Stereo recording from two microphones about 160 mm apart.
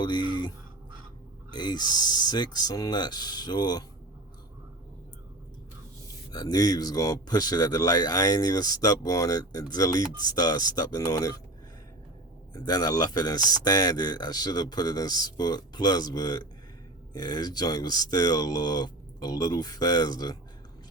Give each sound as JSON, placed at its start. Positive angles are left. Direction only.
{"t": 0.0, "sound": "speech", "side_deg": 30}
{"t": 6.3, "sound": "speech", "side_deg": 25}
{"t": 12.5, "sound": "speech", "side_deg": 25}